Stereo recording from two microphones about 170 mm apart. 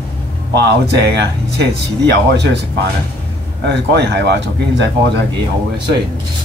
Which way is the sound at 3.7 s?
90° right.